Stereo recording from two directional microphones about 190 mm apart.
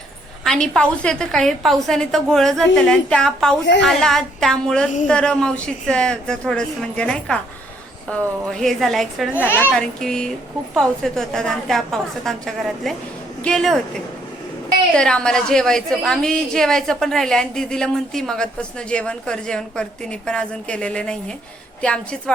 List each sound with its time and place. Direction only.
0.4 s a woman's voice: 5° left (ahead or behind)
8.4 s a woman's voice: centre (ahead or behind)
9.3 s a woman's voice: 10° left (ahead or behind)
14.9 s a woman's voice: 5° left (ahead or behind)